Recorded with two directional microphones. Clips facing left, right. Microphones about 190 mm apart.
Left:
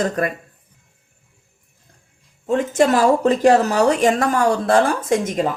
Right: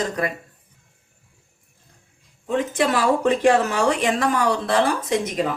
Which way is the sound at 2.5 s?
45° left (ahead or behind).